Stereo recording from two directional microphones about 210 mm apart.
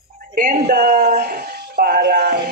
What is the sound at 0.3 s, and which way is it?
Speech, 45° right (ahead or behind).